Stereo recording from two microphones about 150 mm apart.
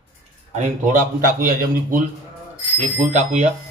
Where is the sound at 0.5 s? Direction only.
60° right (ahead or behind).